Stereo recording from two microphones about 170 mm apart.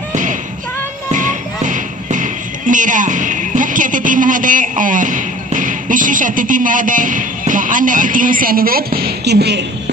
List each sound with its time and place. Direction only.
0.1 s music: 50° right (ahead or behind); by 9.7 s 85° right